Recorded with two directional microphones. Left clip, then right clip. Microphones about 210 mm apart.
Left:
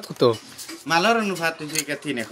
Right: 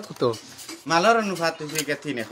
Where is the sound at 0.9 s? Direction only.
5° right (ahead or behind).